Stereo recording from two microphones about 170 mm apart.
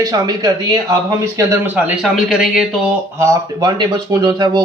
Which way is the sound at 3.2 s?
20° right (ahead or behind).